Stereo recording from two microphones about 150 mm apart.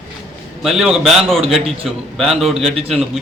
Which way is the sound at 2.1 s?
Centre (ahead or behind).